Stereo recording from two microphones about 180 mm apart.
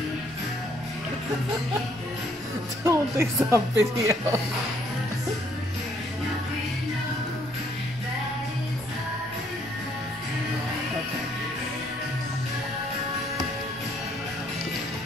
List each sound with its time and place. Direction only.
2.8 s a woman's voice: 15° right (ahead or behind)